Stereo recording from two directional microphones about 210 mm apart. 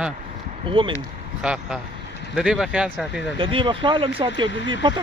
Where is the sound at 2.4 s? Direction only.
5° right (ahead or behind).